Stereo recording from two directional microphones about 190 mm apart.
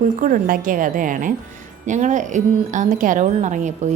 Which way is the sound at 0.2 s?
45° right (ahead or behind).